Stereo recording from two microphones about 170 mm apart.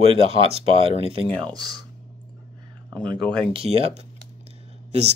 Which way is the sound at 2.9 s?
25° right (ahead or behind).